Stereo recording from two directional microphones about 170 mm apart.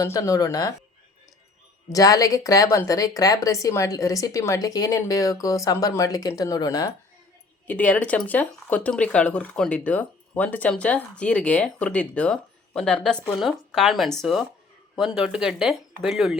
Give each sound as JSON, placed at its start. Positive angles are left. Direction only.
{"t": 0.0, "sound": "speech", "side_deg": 20}
{"t": 1.9, "sound": "speech", "side_deg": 20}
{"t": 7.7, "sound": "speech", "side_deg": 10}